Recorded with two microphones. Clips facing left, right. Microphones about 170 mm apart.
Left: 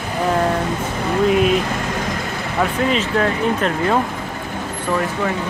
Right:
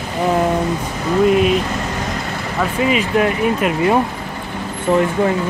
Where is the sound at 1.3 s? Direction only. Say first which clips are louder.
Right 1 dB; centre (ahead or behind).